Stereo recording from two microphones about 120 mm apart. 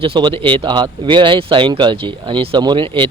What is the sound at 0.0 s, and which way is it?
Speech, 45° right (ahead or behind).